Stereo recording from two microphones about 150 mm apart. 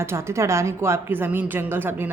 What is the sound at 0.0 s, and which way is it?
A man's voice, 15° right (ahead or behind).